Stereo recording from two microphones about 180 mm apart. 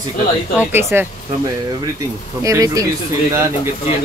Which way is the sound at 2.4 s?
20° right (ahead or behind).